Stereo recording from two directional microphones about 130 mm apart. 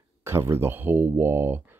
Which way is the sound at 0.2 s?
20° right (ahead or behind).